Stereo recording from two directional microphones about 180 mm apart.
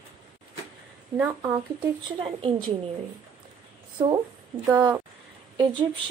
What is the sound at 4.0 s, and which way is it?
Speech, 20° right (ahead or behind).